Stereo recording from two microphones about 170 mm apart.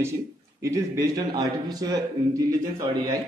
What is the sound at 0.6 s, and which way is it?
Speech, 15° right (ahead or behind).